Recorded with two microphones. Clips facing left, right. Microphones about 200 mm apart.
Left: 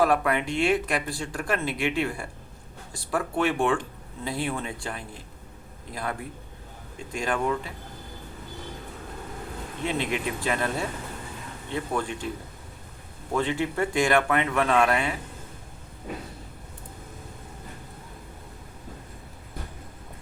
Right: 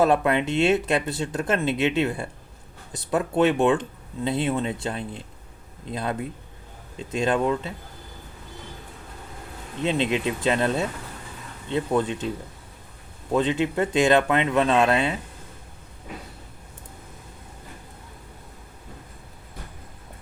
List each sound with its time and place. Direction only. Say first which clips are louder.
0.0 s speech: right 3 dB; 25° right (ahead or behind)
9.8 s speech: right 5 dB; 20° right (ahead or behind)
13.3 s speech: right 4 dB; 20° right (ahead or behind)